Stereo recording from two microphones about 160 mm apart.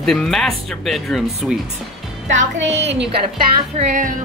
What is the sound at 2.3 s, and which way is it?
Music, 45° right (ahead or behind).